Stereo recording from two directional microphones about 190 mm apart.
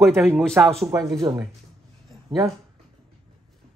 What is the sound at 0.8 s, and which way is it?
Speech, 20° right (ahead or behind).